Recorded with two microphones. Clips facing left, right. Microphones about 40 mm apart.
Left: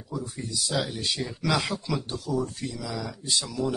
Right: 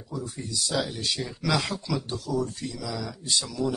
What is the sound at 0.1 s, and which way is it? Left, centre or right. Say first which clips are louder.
Speech: even; centre.